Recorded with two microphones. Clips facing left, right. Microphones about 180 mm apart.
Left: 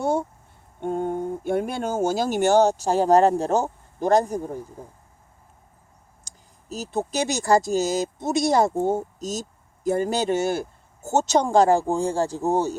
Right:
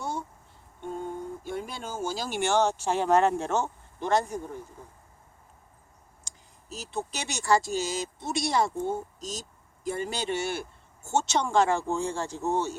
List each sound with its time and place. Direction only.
0.0 s a sound: 55° left (ahead or behind)
0.8 s speech: 55° left (ahead or behind)
6.7 s speech: 40° left (ahead or behind)